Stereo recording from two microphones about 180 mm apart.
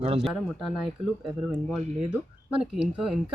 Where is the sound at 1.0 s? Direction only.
30° right (ahead or behind).